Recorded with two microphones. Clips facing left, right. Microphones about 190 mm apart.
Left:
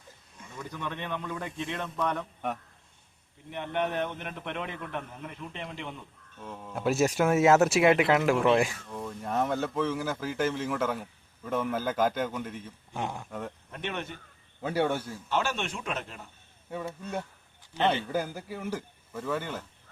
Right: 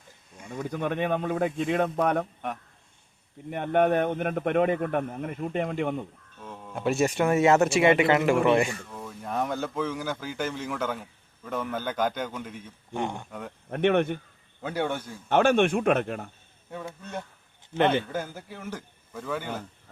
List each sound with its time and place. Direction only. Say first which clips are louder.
0.3 s a man's voice: right 8 dB; 55° right (ahead or behind)
3.5 s a man's voice: right 8 dB; 50° right (ahead or behind)
6.4 s speech: right 1 dB; centre (ahead or behind)
13.7 s speech: right 19 dB; 60° right (ahead or behind)
14.6 s speech: left 1 dB; 5° left (ahead or behind)
15.3 s speech: right 10 dB; 55° right (ahead or behind)
16.7 s speech: left 2 dB; 5° left (ahead or behind)